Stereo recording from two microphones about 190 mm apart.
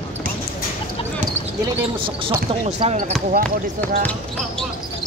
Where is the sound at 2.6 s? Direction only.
35° right (ahead or behind).